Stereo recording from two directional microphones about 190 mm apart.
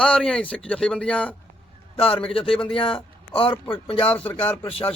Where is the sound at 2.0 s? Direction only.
30° left (ahead or behind).